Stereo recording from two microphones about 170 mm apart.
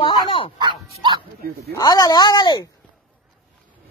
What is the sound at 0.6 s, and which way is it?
Speech, 25° right (ahead or behind).